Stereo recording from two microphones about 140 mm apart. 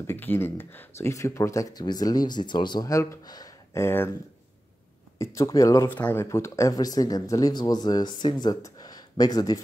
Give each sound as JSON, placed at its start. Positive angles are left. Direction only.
{"t": 0.0, "sound": "speech", "side_deg": 15}
{"t": 5.2, "sound": "speech", "side_deg": 20}